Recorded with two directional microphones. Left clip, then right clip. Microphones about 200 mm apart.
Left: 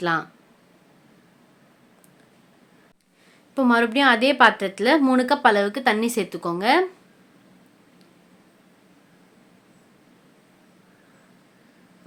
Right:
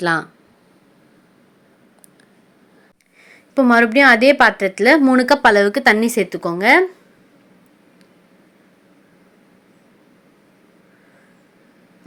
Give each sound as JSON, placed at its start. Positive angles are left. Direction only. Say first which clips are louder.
{"t": 0.0, "sound": "a woman's voice", "louder": "right 5 dB", "side_deg": -20}
{"t": 3.2, "sound": "a woman's voice", "louder": "right 6 dB", "side_deg": -25}